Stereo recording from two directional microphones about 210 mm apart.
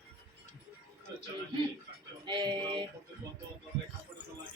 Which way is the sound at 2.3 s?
20° right (ahead or behind).